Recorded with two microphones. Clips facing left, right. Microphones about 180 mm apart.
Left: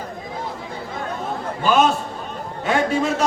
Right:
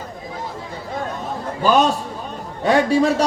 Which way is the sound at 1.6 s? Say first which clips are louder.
Right 1 dB; 40° right (ahead or behind).